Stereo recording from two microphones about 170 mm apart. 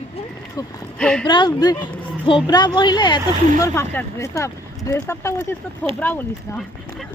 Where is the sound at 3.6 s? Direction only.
15° left (ahead or behind).